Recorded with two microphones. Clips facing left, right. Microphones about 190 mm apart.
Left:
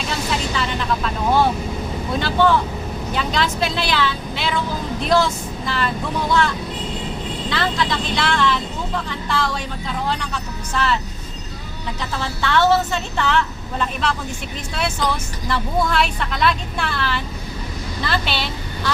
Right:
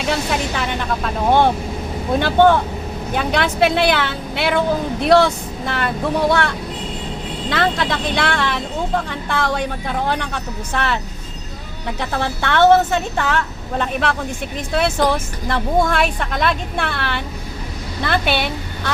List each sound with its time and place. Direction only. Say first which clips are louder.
0.0 s a sound: right 3 dB; 60° right (ahead or behind)
2.1 s speech: right 4 dB; 55° right (ahead or behind)
7.5 s speech: right 3 dB; 55° right (ahead or behind)